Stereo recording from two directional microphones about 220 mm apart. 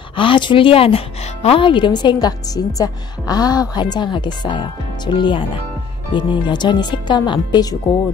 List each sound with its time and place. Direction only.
0.1 s speech: 25° left (ahead or behind)